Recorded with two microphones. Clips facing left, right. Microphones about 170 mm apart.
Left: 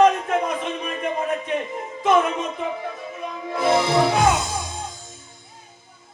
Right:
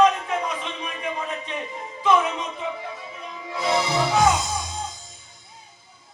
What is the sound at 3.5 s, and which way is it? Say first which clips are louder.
Music: left 4 dB; 55° left (ahead or behind).